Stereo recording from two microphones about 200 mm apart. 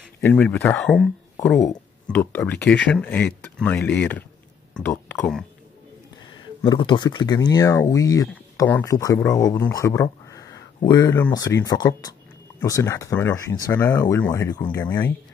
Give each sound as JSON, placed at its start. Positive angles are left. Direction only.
{"t": 0.2, "sound": "speech", "side_deg": 5}
{"t": 6.4, "sound": "speech", "side_deg": 25}